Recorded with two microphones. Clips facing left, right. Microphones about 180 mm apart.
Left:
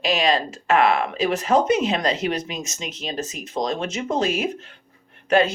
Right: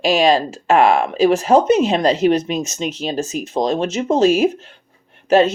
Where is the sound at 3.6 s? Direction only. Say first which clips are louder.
Right 6 dB; 40° right (ahead or behind).